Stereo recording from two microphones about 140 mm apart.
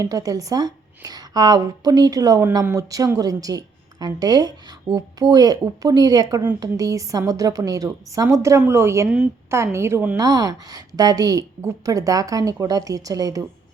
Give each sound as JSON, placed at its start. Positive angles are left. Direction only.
{"t": 0.0, "sound": "a woman's voice", "side_deg": -25}
{"t": 10.2, "sound": "a woman's voice", "side_deg": -25}